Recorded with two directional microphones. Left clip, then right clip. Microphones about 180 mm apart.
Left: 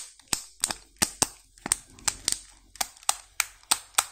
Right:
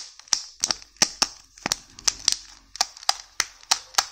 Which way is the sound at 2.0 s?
15° right (ahead or behind).